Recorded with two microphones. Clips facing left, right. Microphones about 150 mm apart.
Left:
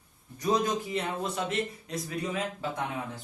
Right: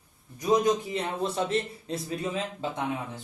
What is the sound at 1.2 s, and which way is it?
Speech, 30° right (ahead or behind).